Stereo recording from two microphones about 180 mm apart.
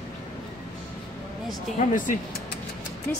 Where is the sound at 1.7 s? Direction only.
45° left (ahead or behind).